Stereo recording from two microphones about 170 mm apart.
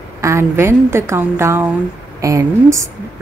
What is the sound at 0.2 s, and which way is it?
A woman's voice, 15° right (ahead or behind).